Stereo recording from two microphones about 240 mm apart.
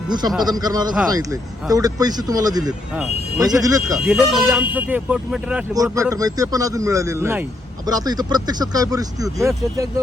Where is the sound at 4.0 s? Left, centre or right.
Centre.